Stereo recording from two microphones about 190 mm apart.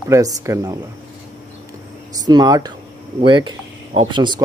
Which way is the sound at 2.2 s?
20° right (ahead or behind).